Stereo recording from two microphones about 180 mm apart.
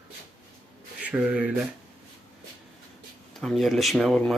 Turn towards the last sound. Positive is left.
turn(degrees=0)  # may be behind; listen again after turning